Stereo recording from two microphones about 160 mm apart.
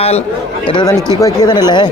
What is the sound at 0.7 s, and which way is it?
Speech, 25° left (ahead or behind).